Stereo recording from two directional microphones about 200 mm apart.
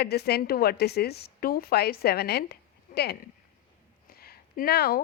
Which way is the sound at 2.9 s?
45° left (ahead or behind).